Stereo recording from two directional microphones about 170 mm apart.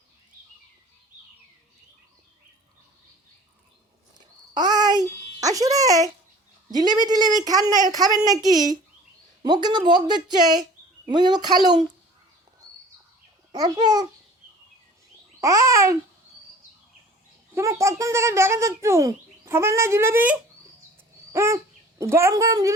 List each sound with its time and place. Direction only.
4.5 s a sound: 25° right (ahead or behind)
6.7 s a woman's voice: 25° right (ahead or behind)
9.4 s a woman's voice: 25° right (ahead or behind)
13.5 s a woman's voice: 25° right (ahead or behind)
15.4 s a woman's voice: 20° right (ahead or behind)
17.5 s speech: 15° right (ahead or behind)